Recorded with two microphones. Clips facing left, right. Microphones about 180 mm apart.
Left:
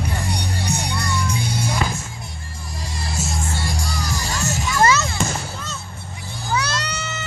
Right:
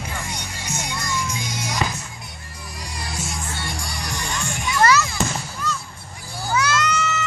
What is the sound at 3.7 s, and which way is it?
Music, 45° left (ahead or behind).